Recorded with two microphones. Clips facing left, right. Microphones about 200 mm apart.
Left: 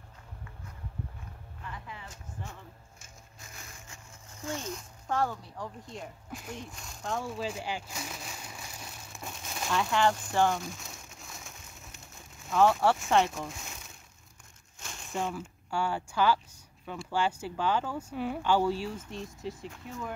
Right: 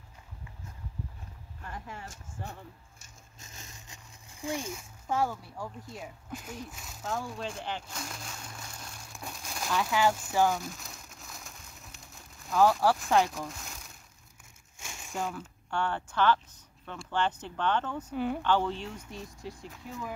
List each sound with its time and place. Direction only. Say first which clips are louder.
1.6 s music: right 2 dB; 45° right (ahead or behind)
3.3 s speech: even; 20° right (ahead or behind); by 20.1 s centre (ahead or behind)